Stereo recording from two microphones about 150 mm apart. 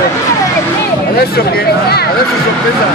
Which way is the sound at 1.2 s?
90° left.